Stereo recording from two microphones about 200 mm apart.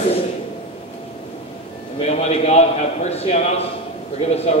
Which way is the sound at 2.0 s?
35° left (ahead or behind).